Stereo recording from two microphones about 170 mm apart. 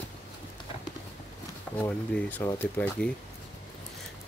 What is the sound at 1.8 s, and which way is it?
Speech, 10° left (ahead or behind).